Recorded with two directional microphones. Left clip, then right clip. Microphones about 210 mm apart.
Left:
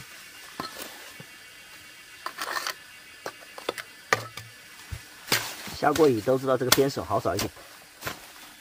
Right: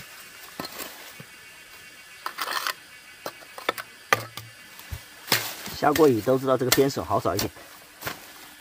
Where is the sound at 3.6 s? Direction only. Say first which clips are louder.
Right 3 dB; centre (ahead or behind).